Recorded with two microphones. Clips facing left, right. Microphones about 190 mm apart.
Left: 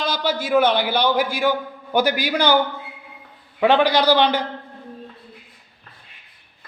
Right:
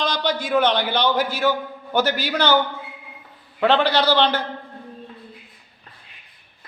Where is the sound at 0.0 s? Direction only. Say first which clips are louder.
Even; 5° left (ahead or behind).